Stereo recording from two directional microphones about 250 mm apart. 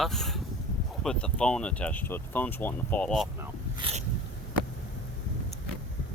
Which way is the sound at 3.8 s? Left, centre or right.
Right.